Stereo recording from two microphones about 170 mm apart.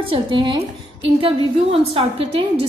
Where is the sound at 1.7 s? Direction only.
35° right (ahead or behind).